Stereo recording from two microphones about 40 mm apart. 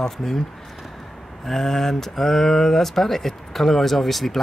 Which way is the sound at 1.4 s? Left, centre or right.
Centre.